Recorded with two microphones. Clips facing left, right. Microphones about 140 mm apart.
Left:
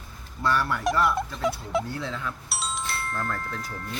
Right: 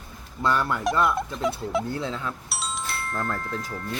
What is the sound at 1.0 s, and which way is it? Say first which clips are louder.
Speech: right 1 dB; centre (ahead or behind).